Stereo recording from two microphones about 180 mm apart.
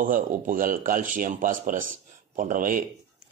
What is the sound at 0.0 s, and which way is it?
A man's voice, 50° right (ahead or behind).